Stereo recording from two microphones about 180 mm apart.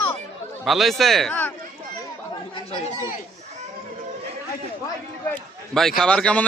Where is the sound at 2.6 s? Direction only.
35° left (ahead or behind).